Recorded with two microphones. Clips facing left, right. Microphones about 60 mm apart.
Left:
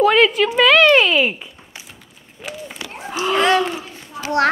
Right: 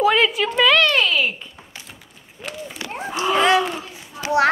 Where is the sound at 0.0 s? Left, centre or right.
Centre.